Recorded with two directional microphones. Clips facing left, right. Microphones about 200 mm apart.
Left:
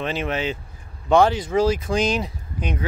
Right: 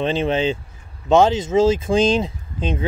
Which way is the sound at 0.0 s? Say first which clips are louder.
Right 6 dB; 25° right (ahead or behind).